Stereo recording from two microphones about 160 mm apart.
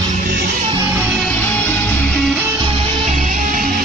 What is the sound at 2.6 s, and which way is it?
Music, 35° right (ahead or behind).